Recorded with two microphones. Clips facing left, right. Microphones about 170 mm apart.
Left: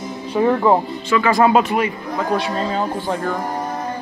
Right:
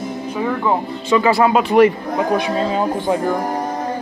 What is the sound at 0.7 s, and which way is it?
Speech, 35° left (ahead or behind).